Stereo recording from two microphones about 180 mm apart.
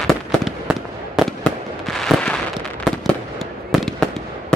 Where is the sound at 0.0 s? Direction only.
Centre (ahead or behind).